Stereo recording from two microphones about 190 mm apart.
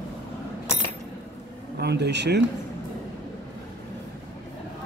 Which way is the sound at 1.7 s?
60° right (ahead or behind).